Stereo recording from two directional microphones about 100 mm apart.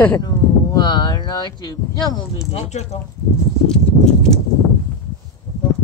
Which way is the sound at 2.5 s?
90° left.